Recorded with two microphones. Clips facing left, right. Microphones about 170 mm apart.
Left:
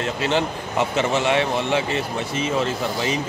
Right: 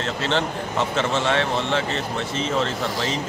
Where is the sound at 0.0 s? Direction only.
15° left (ahead or behind).